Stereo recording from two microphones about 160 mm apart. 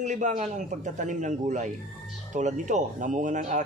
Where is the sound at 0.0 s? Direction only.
50° right (ahead or behind).